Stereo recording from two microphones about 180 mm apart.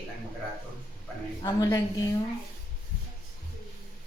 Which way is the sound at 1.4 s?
20° left (ahead or behind).